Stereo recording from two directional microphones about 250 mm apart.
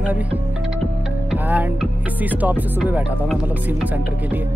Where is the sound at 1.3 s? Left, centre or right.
Centre.